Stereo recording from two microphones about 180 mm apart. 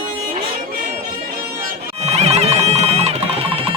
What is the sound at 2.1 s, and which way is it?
Music, 35° right (ahead or behind).